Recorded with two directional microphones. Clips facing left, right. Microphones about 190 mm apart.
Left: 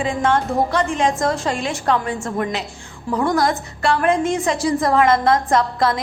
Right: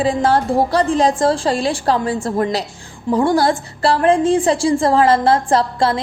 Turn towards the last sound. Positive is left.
turn(degrees=-30)  # may be behind; listen again after turning